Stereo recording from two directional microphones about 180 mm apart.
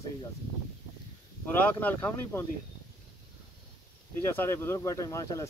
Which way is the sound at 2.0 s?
10° left (ahead or behind).